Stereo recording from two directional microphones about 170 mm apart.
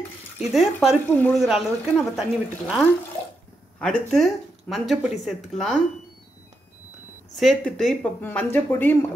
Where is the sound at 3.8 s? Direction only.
5° left (ahead or behind).